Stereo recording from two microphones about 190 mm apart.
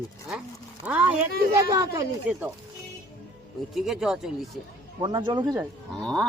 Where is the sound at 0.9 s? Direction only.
5° right (ahead or behind).